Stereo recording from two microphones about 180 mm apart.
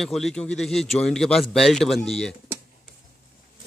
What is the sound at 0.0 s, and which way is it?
A man's voice, centre (ahead or behind).